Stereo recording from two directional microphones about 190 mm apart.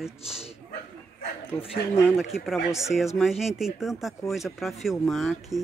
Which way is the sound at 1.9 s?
15° left (ahead or behind).